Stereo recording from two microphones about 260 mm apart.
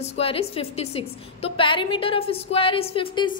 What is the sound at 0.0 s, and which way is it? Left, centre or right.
A woman's voice, left.